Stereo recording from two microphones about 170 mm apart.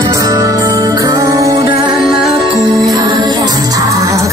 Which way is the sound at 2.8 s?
25° right (ahead or behind).